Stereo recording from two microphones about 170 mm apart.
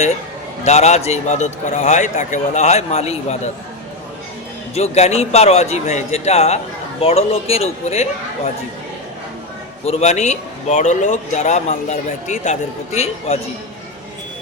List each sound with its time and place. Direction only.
0.6 s a man's voice: 40° left (ahead or behind)
4.7 s a man's voice: 40° left (ahead or behind)
9.8 s a man's voice: 40° left (ahead or behind)